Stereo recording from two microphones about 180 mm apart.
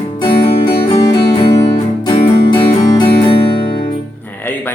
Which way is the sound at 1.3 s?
30° left (ahead or behind).